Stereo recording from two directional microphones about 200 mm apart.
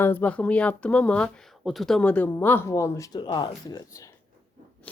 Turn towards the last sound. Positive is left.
turn(degrees=20)  # may be behind; listen again after turning